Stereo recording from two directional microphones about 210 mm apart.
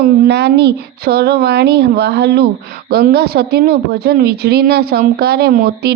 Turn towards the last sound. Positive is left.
turn(degrees=-45)  # may be behind; listen again after turning